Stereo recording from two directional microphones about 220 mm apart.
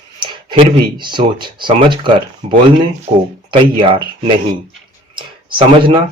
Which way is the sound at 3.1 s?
25° right (ahead or behind).